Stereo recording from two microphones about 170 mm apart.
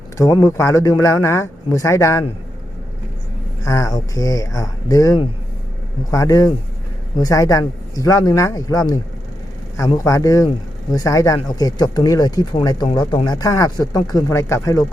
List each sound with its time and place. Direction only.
0.2 s speech: 20° left (ahead or behind)
3.6 s speech: 20° left (ahead or behind)
10.0 s speech: 20° left (ahead or behind)